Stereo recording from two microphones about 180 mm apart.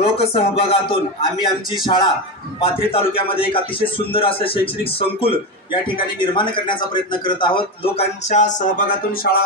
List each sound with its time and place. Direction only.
0.2 s a man's voice: 30° left (ahead or behind); by 9.4 s 50° left (ahead or behind)